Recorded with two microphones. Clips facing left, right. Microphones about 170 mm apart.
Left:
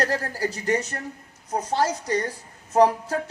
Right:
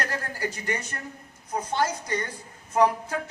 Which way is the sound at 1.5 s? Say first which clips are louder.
Left 3 dB; 40° left (ahead or behind).